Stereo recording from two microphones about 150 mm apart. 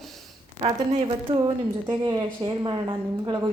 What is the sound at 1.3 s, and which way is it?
Speech, 40° right (ahead or behind).